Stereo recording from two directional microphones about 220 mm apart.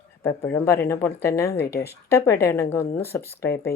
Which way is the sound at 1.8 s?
10° left (ahead or behind).